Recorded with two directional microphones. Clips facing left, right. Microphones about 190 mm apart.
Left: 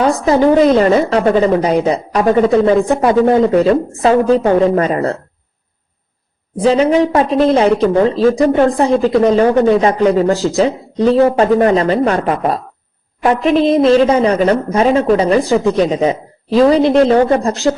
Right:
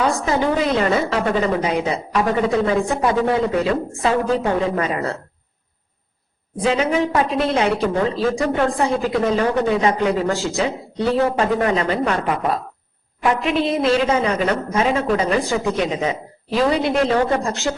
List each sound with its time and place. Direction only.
0.0 s a woman's voice: 35° left (ahead or behind)
6.6 s speech: 35° left (ahead or behind)